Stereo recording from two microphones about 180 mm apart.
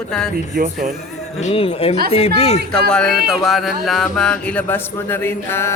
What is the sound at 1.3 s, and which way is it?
Speech, 35° left (ahead or behind).